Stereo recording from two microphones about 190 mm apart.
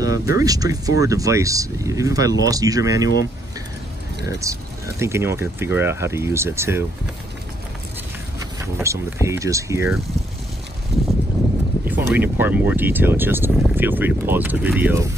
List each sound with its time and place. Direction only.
0.0 s speech: 15° right (ahead or behind)
4.3 s speech: 15° right (ahead or behind)
8.7 s speech: 15° right (ahead or behind)
11.8 s speech: 10° right (ahead or behind)